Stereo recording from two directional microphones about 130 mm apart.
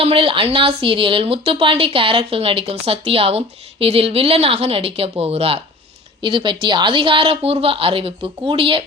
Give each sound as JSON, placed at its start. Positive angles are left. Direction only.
{"t": 0.0, "sound": "speech", "side_deg": -45}
{"t": 6.2, "sound": "speech", "side_deg": -40}